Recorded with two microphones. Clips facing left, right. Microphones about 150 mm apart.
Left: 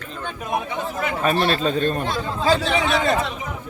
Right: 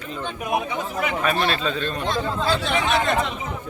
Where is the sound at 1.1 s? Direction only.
35° left (ahead or behind).